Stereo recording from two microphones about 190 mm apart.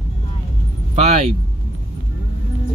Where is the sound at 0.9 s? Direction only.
35° right (ahead or behind).